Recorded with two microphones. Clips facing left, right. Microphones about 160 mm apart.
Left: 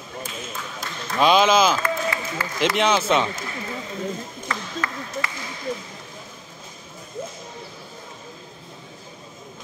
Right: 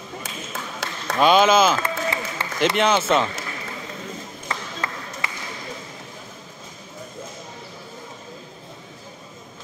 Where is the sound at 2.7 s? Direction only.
Centre (ahead or behind).